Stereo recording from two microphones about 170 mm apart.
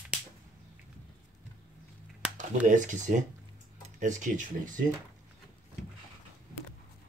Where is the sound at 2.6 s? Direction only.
50° right (ahead or behind).